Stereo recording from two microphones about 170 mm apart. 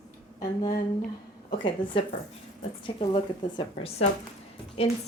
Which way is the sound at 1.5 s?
30° left (ahead or behind).